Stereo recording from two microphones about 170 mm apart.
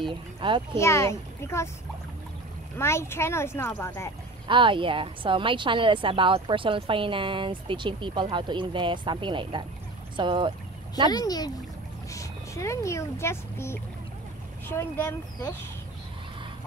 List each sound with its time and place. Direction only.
0.1 s a child's voice: 30° right (ahead or behind)
0.7 s speech: 15° left (ahead or behind)
2.8 s speech: 15° left (ahead or behind)
4.5 s a woman's voice: 30° right (ahead or behind)
11.1 s speech: 20° left (ahead or behind)